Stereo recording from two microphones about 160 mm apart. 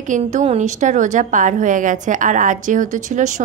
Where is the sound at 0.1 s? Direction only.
50° right (ahead or behind).